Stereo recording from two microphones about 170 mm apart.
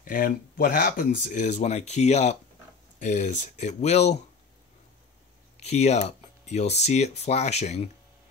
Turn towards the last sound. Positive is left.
turn(degrees=40)  # may be behind; listen again after turning